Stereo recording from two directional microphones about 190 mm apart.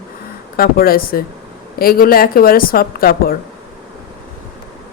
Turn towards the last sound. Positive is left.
turn(degrees=50)  # may be behind; listen again after turning